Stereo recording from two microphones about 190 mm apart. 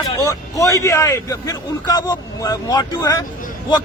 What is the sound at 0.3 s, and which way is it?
A man's voice, 15° left (ahead or behind).